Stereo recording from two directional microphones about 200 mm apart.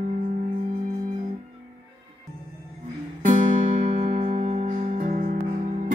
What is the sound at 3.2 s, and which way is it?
Music, 35° right (ahead or behind).